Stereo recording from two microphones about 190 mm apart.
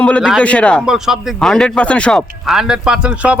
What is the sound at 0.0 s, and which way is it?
Speech, 5° left (ahead or behind).